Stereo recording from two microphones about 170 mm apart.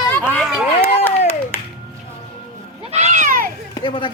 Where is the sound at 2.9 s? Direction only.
40° right (ahead or behind).